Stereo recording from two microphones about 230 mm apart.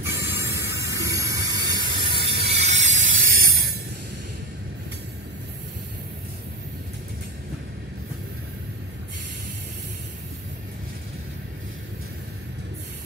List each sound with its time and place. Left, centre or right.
0.0 s squeal: centre; by 3.0 s right
3.3 s ratchet: right